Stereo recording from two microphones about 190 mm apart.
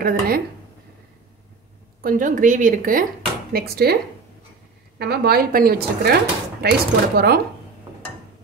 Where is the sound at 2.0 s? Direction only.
45° right (ahead or behind).